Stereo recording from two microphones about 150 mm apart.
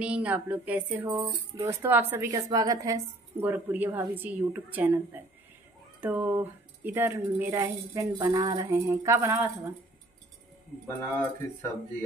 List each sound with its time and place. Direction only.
0.0 s a woman's voice: 10° right (ahead or behind)
1.0 s music: 30° right (ahead or behind)
1.6 s a woman's voice: 15° right (ahead or behind)
11.0 s speech: 15° left (ahead or behind)